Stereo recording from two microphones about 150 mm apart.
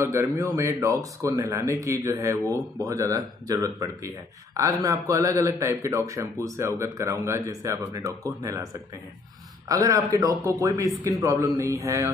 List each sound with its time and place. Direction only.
0.0 s speech: 20° right (ahead or behind)